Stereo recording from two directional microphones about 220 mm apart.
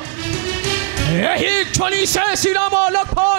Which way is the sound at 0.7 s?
15° right (ahead or behind).